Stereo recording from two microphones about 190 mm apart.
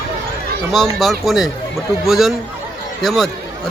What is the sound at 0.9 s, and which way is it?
Speech, centre (ahead or behind).